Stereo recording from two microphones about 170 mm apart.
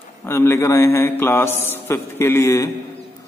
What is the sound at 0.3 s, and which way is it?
A man's voice, 15° left (ahead or behind).